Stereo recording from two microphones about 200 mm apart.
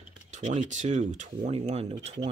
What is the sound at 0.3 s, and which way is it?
Speech, 40° right (ahead or behind).